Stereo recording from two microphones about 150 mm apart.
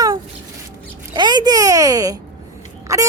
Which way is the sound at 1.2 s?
30° right (ahead or behind).